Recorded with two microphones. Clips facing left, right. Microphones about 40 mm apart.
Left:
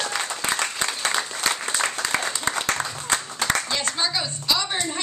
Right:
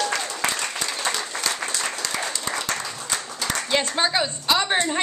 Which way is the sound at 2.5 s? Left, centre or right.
Left.